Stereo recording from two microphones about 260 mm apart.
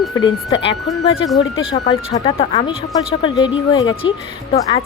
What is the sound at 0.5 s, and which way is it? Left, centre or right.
Speech, left.